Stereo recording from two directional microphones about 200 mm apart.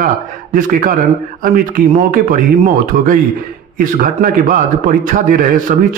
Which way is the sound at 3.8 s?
40° right (ahead or behind).